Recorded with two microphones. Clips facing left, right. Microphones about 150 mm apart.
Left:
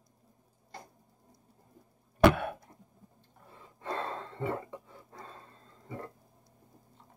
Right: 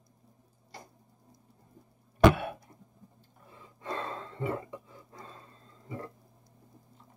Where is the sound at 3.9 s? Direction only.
35° left (ahead or behind).